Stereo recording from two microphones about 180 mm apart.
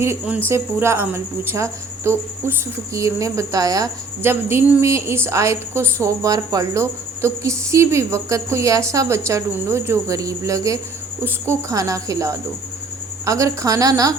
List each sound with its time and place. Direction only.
0.0 s a woman's voice: 10° right (ahead or behind)